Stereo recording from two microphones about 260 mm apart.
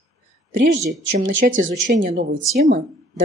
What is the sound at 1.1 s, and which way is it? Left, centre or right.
A woman's voice, right.